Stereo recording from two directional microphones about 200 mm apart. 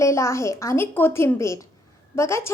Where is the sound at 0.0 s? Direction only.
15° left (ahead or behind).